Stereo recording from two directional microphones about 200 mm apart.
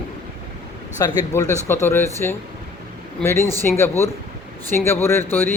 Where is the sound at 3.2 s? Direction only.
15° left (ahead or behind).